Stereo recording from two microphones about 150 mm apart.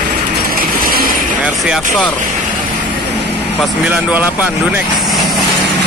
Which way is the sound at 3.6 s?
10° right (ahead or behind).